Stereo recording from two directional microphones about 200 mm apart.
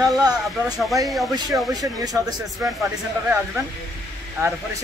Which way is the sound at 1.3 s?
20° right (ahead or behind).